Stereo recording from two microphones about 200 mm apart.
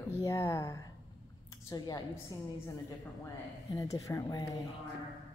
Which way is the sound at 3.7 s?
15° left (ahead or behind).